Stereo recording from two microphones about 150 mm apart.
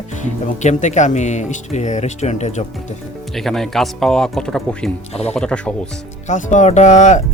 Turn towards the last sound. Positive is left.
turn(degrees=55)  # may be behind; listen again after turning